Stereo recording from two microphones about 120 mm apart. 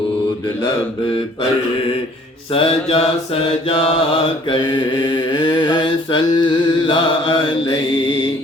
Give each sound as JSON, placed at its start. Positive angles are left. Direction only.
{"t": 2.5, "sound": "mantra", "side_deg": 50}
{"t": 4.4, "sound": "mantra", "side_deg": 40}